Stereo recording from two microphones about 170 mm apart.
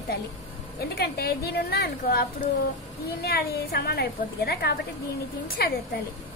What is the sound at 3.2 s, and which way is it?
A woman's voice, 65° left (ahead or behind).